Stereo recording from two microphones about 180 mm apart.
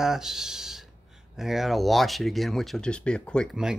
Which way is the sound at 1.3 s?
Centre (ahead or behind).